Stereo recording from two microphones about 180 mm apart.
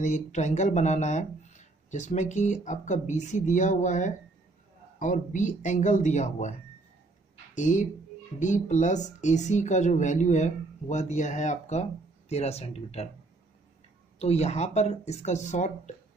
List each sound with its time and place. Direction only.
0.0 s speech: 40° left (ahead or behind)
7.5 s speech: 45° left (ahead or behind)
14.1 s speech: 35° left (ahead or behind)